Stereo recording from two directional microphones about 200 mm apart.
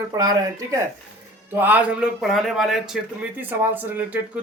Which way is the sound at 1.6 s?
10° right (ahead or behind).